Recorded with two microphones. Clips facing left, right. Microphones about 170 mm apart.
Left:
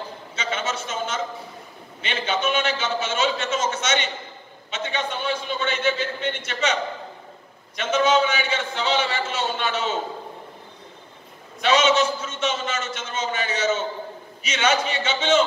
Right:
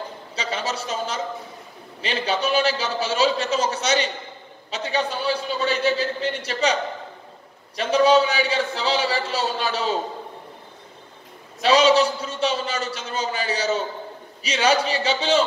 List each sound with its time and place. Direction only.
0.4 s a man's voice: 35° right (ahead or behind)
11.6 s a man's voice: 35° right (ahead or behind)